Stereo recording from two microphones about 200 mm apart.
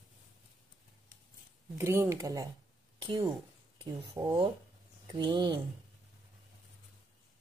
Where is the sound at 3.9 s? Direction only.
25° right (ahead or behind).